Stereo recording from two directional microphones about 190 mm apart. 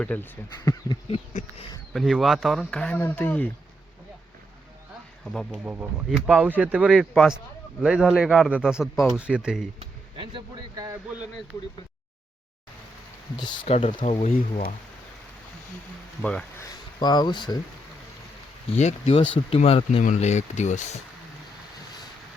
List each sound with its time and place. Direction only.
0.0 s speech: 10° left (ahead or behind)
1.9 s speech: centre (ahead or behind)
5.2 s speech: centre (ahead or behind)
9.8 s speech: 25° right (ahead or behind)
13.3 s speech: 25° left (ahead or behind)
13.7 s speech: 35° left (ahead or behind)
16.2 s speech: 5° left (ahead or behind)
16.6 s speech: 20° left (ahead or behind)
18.8 s speech: 35° left (ahead or behind)